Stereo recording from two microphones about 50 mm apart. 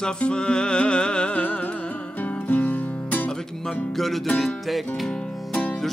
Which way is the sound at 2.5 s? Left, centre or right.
Left.